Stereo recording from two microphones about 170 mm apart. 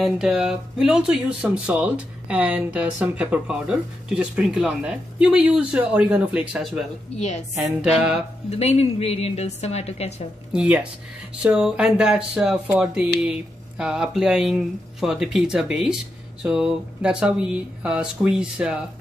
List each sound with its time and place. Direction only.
0.0 s speech: centre (ahead or behind)
7.2 s a woman's voice: 40° left (ahead or behind)
7.5 s speech: 5° right (ahead or behind)
8.5 s a woman's voice: 35° left (ahead or behind)
10.5 s speech: 5° right (ahead or behind)